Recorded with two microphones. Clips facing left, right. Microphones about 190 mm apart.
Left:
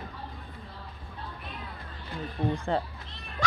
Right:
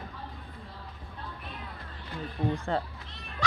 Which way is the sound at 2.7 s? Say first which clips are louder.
Left 3 dB; 20° left (ahead or behind).